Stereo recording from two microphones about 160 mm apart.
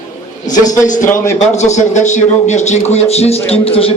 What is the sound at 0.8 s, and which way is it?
A woman's voice, 55° left (ahead or behind).